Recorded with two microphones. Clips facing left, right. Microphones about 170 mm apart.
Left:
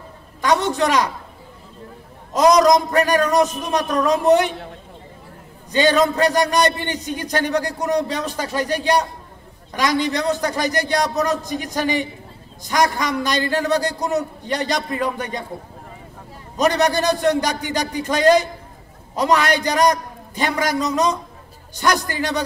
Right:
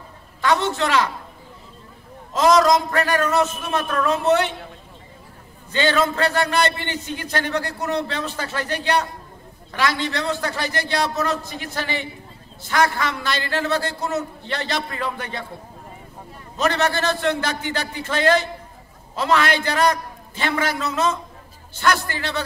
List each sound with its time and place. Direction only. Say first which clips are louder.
0.4 s a sound: left 2 dB; 15° left (ahead or behind)
2.3 s a man's voice: left 2 dB; 15° left (ahead or behind)
5.7 s a man's voice: left 4 dB; 15° left (ahead or behind)
16.5 s a man's voice: left 3 dB; 15° left (ahead or behind)